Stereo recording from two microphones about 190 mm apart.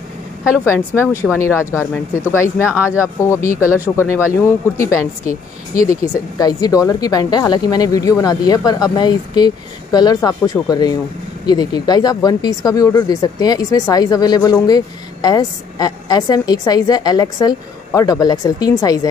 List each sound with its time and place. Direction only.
0.7 s speech: 15° left (ahead or behind)
1.2 s speech: centre (ahead or behind)
2.3 s a woman's voice: 15° left (ahead or behind)